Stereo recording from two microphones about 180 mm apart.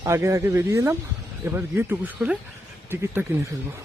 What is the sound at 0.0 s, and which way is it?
Speech, 15° right (ahead or behind).